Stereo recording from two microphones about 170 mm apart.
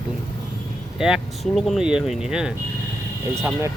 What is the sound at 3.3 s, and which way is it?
Speech, 15° right (ahead or behind).